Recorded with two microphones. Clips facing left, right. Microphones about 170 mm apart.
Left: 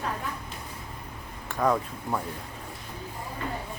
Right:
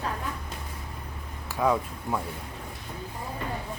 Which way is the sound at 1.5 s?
5° right (ahead or behind).